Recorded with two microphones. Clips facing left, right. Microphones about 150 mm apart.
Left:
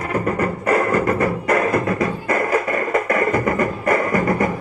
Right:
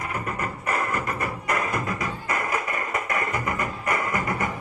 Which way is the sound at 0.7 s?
50° left (ahead or behind).